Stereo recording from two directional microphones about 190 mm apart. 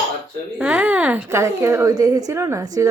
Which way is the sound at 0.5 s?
5° right (ahead or behind).